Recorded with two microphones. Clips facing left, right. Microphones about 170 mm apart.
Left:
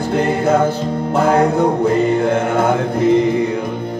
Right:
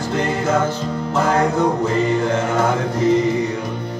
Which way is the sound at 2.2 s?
55° left (ahead or behind).